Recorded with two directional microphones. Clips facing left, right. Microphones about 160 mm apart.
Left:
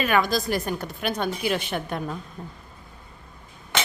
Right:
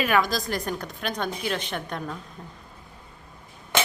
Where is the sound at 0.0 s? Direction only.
Centre (ahead or behind).